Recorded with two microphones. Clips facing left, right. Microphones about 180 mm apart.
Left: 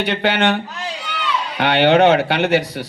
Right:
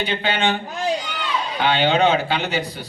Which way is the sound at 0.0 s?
75° left (ahead or behind).